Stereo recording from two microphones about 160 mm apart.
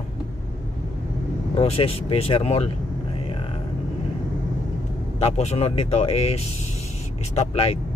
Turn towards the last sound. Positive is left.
turn(degrees=40)  # may be behind; listen again after turning